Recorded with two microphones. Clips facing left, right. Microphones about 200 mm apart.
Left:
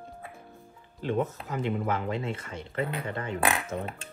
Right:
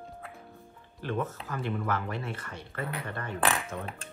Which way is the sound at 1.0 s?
20° left (ahead or behind).